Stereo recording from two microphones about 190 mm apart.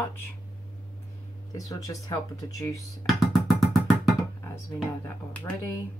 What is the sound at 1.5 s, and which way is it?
Speech, 20° left (ahead or behind).